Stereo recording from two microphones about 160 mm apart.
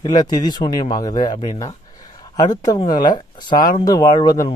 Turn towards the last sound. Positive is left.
turn(degrees=25)  # may be behind; listen again after turning